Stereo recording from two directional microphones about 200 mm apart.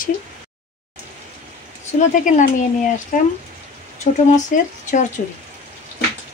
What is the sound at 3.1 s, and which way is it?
Speech, 40° left (ahead or behind).